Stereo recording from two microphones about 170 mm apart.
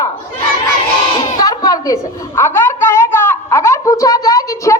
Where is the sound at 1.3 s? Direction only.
20° left (ahead or behind).